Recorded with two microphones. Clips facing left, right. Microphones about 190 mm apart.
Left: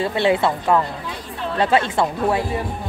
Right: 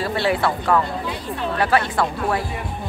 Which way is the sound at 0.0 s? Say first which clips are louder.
Left 3 dB; 20° left (ahead or behind).